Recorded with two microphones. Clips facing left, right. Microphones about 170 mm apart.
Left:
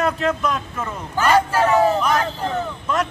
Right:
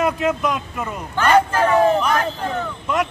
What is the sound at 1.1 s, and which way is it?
Speech, 10° left (ahead or behind).